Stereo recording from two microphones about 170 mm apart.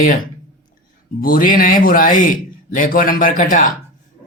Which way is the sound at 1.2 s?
55° left (ahead or behind).